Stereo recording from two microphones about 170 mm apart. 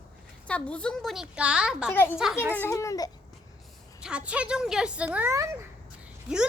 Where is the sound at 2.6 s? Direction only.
15° left (ahead or behind).